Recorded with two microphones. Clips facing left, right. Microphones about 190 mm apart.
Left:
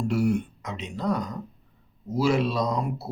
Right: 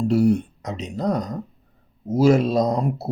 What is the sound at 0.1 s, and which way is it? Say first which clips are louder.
Speech: right 6 dB; 35° right (ahead or behind).